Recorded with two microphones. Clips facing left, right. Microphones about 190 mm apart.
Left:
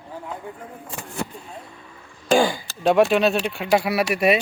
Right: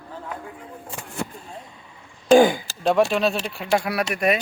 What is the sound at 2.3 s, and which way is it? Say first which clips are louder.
Chop: right 5 dB; 20° right (ahead or behind).